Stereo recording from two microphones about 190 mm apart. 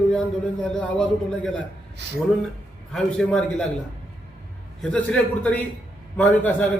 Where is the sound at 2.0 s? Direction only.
65° right (ahead or behind).